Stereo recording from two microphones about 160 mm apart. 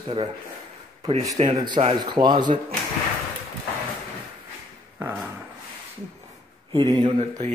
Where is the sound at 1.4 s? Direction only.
30° right (ahead or behind).